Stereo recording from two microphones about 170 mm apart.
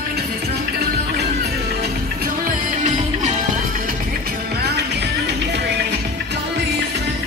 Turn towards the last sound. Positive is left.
turn(degrees=-85)